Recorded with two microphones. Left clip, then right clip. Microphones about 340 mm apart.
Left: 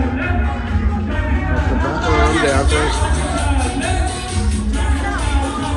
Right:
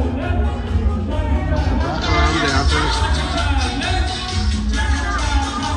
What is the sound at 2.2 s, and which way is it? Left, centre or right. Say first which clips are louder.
Music: left 3 dB; centre.